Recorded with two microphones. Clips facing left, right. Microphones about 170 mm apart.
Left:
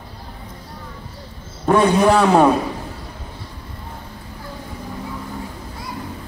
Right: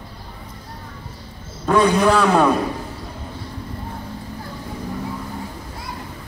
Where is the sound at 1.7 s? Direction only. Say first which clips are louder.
Left 1 dB; 25° left (ahead or behind).